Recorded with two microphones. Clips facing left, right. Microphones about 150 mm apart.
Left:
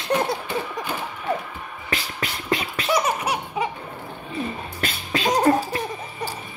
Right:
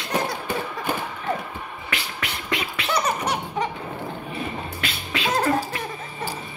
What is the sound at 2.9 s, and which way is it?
Baby laughter, 10° left (ahead or behind).